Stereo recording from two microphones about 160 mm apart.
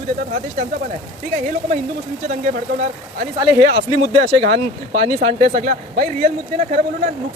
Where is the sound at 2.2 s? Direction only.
60° right (ahead or behind).